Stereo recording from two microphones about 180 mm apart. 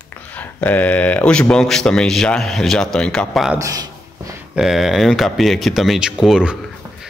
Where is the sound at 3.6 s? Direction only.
20° right (ahead or behind).